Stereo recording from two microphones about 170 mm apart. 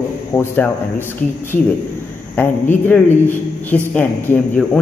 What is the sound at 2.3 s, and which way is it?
A man's voice, 10° left (ahead or behind).